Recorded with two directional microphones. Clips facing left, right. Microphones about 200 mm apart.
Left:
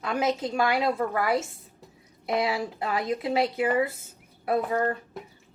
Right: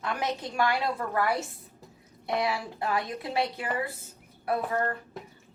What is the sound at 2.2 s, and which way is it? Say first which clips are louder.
Speech: left 3 dB; 20° left (ahead or behind).